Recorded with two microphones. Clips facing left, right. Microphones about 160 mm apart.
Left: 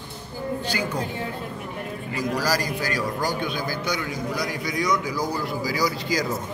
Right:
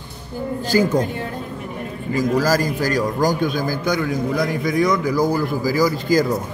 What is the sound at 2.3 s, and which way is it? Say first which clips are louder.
A man's voice: right 6 dB; 45° right (ahead or behind).